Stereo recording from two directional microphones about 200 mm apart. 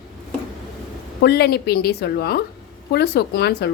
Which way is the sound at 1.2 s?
55° left (ahead or behind).